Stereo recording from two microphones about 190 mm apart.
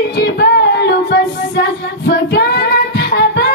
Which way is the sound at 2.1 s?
55° left (ahead or behind).